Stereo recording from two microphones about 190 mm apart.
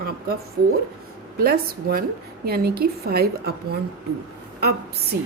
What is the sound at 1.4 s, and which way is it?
A woman's voice, 50° right (ahead or behind).